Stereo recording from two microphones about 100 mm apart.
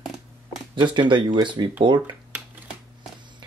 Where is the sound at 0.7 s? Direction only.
50° right (ahead or behind).